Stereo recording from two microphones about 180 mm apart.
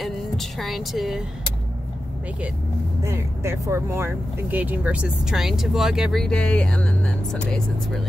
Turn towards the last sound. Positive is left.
turn(degrees=5)  # may be behind; listen again after turning